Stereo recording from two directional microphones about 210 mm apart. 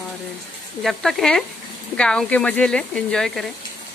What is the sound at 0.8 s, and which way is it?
Speech, centre (ahead or behind).